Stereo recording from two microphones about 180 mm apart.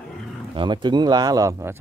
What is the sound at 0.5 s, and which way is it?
Speech, 25° right (ahead or behind).